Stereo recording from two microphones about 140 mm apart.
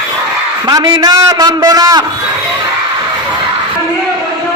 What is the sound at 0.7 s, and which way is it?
A man's voice, 30° right (ahead or behind).